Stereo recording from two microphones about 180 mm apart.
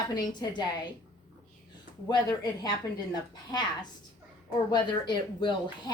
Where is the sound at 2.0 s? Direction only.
20° left (ahead or behind).